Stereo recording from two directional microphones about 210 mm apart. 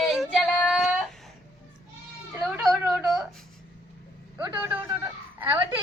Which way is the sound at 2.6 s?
Centre (ahead or behind).